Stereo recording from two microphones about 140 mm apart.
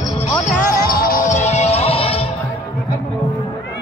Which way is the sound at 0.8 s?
90° left.